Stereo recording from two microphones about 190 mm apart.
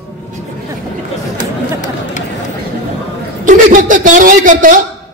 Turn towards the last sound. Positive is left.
turn(degrees=-45)  # may be behind; listen again after turning